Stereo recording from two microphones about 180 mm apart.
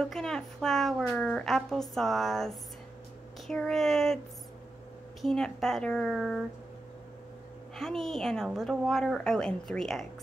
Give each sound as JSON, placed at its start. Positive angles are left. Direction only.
{"t": 0.0, "sound": "a woman's voice", "side_deg": 5}
{"t": 5.2, "sound": "a woman's voice", "side_deg": 0}
{"t": 7.7, "sound": "a woman's voice", "side_deg": 0}